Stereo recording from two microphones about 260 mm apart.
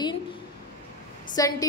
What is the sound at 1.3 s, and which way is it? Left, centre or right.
Speech, centre.